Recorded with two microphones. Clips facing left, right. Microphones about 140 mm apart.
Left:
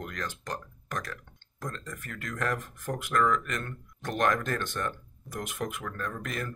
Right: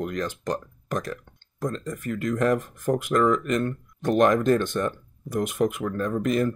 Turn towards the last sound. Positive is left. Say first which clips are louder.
# right 12 dB
turn(degrees=-20)  # may be behind; listen again after turning